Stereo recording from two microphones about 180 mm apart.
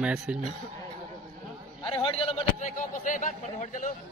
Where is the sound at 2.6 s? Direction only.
45° left (ahead or behind).